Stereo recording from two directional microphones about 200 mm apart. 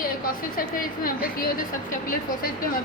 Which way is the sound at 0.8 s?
45° left (ahead or behind).